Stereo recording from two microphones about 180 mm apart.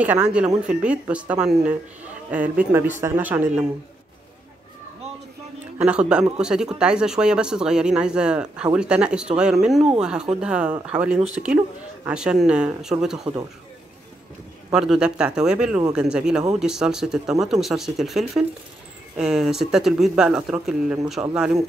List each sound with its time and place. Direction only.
0.0 s speech: 10° right (ahead or behind)
5.8 s speech: 5° right (ahead or behind)
13.2 s speech: 20° right (ahead or behind)
14.7 s speech: 5° right (ahead or behind)